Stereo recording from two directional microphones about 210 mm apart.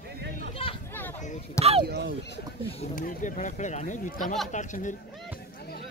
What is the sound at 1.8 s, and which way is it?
Speech, 50° right (ahead or behind).